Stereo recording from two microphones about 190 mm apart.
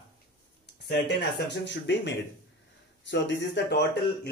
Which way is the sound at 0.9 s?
65° left (ahead or behind).